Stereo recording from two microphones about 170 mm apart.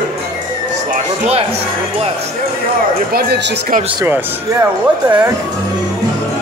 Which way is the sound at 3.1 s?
80° right.